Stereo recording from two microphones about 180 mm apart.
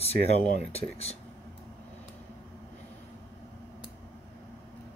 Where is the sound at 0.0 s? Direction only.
35° left (ahead or behind).